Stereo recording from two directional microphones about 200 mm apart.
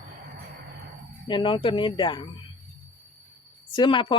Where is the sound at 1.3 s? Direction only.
25° left (ahead or behind).